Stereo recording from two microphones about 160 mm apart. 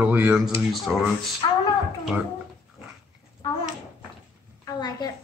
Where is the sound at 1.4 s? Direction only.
35° left (ahead or behind).